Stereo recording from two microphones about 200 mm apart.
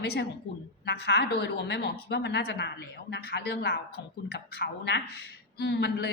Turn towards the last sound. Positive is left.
turn(degrees=60)  # may be behind; listen again after turning